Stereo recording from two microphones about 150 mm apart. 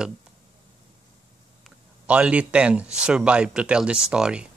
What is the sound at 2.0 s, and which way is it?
A man's voice, 10° right (ahead or behind).